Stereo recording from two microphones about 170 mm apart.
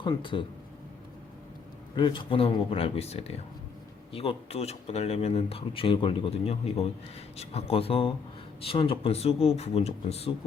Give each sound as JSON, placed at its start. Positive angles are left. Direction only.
{"t": 0.0, "sound": "speech", "side_deg": 30}
{"t": 2.0, "sound": "speech", "side_deg": 30}